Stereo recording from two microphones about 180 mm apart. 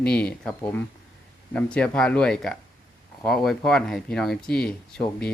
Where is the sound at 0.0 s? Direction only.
5° left (ahead or behind).